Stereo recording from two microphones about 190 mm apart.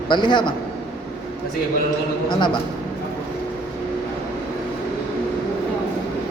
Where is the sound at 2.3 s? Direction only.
25° left (ahead or behind).